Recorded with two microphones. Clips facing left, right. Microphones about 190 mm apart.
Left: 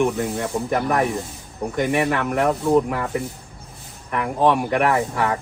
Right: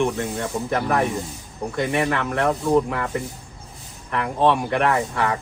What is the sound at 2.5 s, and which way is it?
Speech, 5° left (ahead or behind).